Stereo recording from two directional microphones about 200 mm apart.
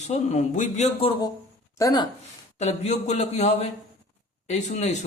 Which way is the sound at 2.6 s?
35° left (ahead or behind).